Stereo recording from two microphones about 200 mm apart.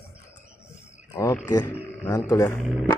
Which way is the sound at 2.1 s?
15° left (ahead or behind).